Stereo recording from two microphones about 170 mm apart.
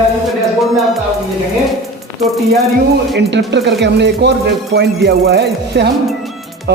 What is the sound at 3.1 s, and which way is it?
Music, 85° right.